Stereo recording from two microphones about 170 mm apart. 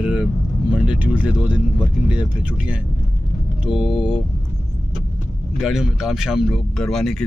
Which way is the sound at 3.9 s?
30° left (ahead or behind).